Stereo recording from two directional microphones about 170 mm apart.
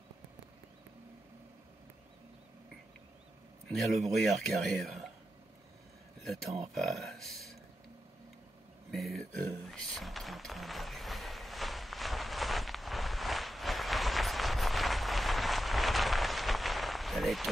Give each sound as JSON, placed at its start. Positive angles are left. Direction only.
{"t": 4.1, "sound": "speech", "side_deg": 0}
{"t": 6.7, "sound": "speech", "side_deg": 0}
{"t": 8.9, "sound": "a sound", "side_deg": 0}